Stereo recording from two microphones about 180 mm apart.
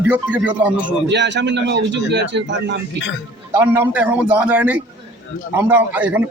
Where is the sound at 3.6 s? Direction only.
10° right (ahead or behind).